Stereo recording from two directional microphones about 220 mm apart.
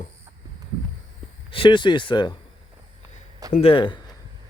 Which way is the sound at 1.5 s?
25° left (ahead or behind).